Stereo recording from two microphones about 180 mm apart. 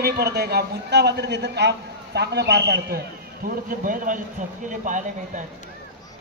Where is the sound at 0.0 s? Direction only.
60° right (ahead or behind).